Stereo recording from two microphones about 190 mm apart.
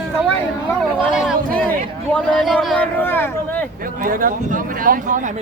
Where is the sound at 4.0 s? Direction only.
45° right (ahead or behind).